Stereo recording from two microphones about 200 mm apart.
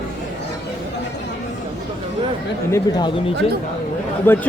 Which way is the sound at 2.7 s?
15° left (ahead or behind).